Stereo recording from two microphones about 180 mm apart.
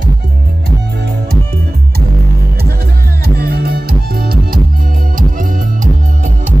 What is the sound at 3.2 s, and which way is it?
Music, 60° right (ahead or behind).